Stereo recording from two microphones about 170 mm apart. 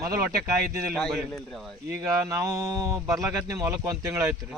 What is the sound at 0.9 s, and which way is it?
Speech, centre (ahead or behind).